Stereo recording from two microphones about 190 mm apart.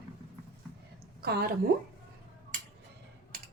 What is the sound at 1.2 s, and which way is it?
Speech, 55° right (ahead or behind).